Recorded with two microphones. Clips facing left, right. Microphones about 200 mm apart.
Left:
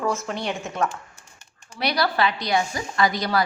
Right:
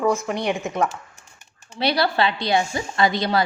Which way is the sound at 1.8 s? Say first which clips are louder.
Right 2 dB; 25° right (ahead or behind).